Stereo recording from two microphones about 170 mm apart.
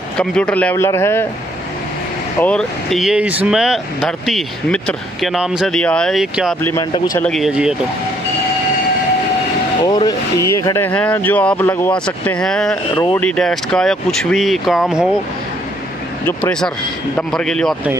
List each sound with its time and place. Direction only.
0.2 s speech: 5° left (ahead or behind)
2.4 s speech: 5° left (ahead or behind)
6.6 s speech: 15° left (ahead or behind)
7.2 s speech: 5° left (ahead or behind)
9.8 s speech: 25° left (ahead or behind); by 15.0 s centre (ahead or behind)
16.3 s speech: 5° left (ahead or behind)